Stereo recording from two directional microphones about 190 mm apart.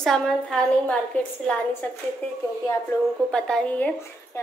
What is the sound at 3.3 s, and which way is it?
A woman's voice, 5° left (ahead or behind).